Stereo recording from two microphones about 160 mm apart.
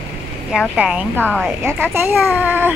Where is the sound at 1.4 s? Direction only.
15° right (ahead or behind).